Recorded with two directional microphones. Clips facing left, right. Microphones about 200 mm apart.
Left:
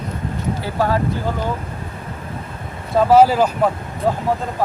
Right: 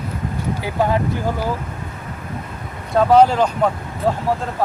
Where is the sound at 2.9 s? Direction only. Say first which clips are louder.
Left 1 dB; 5° left (ahead or behind).